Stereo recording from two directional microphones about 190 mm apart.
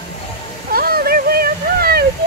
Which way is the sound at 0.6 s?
50° right (ahead or behind).